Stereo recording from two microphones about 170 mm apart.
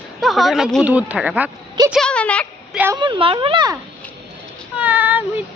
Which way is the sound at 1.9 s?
5° left (ahead or behind).